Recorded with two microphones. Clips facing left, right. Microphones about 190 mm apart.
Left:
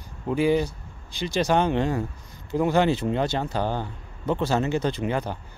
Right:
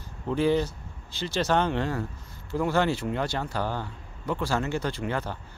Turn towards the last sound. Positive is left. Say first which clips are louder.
# left 4 dB
turn(degrees=15)  # may be behind; listen again after turning